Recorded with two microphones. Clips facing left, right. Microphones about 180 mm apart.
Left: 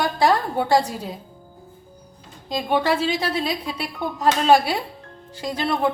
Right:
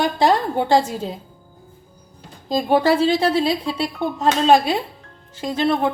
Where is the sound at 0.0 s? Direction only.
20° right (ahead or behind).